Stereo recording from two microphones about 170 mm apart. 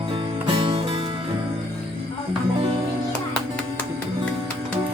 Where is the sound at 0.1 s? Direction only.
30° right (ahead or behind).